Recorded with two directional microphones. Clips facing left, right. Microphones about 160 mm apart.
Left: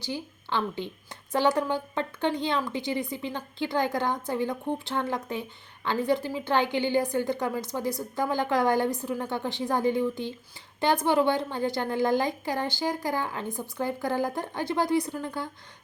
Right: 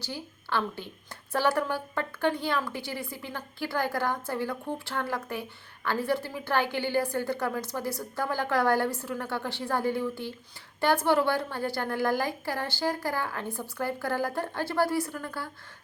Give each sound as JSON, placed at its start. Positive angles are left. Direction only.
{"t": 0.0, "sound": "a woman's voice", "side_deg": 15}